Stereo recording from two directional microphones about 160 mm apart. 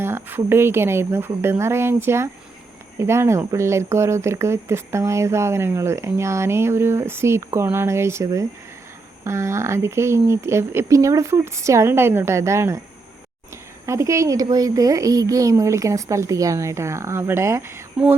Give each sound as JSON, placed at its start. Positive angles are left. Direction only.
{"t": 0.0, "sound": "speech", "side_deg": -15}
{"t": 13.8, "sound": "a woman's voice", "side_deg": -20}